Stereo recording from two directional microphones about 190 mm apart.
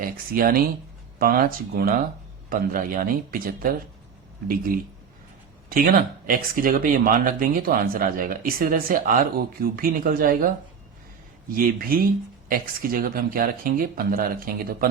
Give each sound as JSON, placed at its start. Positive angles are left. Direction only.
{"t": 0.0, "sound": "speech", "side_deg": -50}
{"t": 5.6, "sound": "speech", "side_deg": -50}